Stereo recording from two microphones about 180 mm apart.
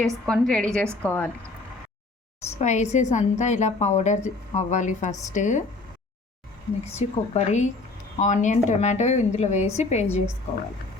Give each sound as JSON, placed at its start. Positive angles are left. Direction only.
{"t": 0.0, "sound": "a woman's voice", "side_deg": 0}
{"t": 2.6, "sound": "a woman's voice", "side_deg": 40}
{"t": 6.9, "sound": "a woman's voice", "side_deg": 35}